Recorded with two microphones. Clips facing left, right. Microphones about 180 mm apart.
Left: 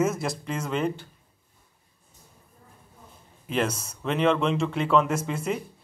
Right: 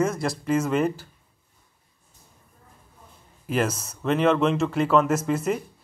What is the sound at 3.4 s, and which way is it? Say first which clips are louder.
A man's voice: right 2 dB; 5° right (ahead or behind).